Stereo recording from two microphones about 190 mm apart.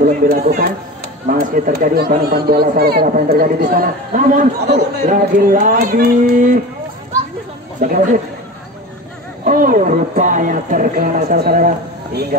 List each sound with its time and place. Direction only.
0.0 s speech: 45° right (ahead or behind)
7.8 s speech: 45° right (ahead or behind)
9.4 s speech: 45° right (ahead or behind)